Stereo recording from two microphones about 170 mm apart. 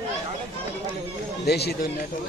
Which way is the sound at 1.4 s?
70° left (ahead or behind).